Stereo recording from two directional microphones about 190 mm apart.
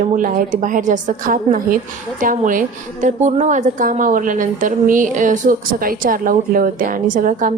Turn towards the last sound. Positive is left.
turn(degrees=-45)  # may be behind; listen again after turning